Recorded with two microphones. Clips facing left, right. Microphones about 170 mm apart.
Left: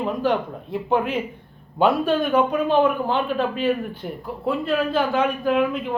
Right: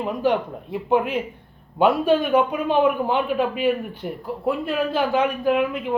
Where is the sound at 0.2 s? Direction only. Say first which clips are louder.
Right 1 dB; 10° right (ahead or behind).